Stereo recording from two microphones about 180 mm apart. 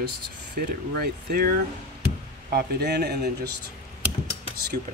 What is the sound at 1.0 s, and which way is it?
A man's voice, 60° right (ahead or behind).